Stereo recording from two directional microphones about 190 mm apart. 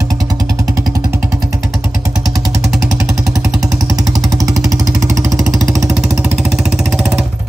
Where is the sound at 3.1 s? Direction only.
5° right (ahead or behind).